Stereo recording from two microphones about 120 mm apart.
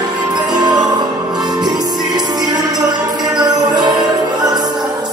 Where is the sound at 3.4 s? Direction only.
35° right (ahead or behind).